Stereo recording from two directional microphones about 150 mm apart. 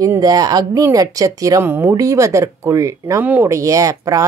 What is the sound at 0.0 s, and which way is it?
Speech, 25° right (ahead or behind).